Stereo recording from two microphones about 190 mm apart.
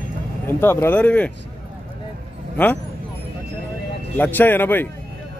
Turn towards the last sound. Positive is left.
turn(degrees=10)  # may be behind; listen again after turning